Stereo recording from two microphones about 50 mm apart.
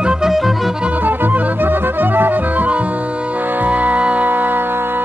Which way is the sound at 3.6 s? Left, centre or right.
Right.